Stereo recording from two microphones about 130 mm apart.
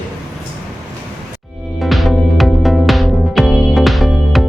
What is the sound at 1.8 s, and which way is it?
Music, centre (ahead or behind).